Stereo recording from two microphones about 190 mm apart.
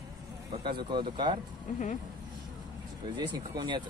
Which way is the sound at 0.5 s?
25° right (ahead or behind).